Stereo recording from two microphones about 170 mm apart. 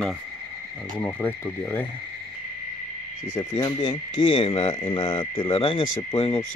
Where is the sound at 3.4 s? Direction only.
25° left (ahead or behind).